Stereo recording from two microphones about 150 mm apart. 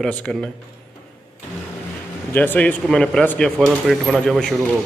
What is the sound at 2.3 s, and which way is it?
A man's voice, 10° left (ahead or behind).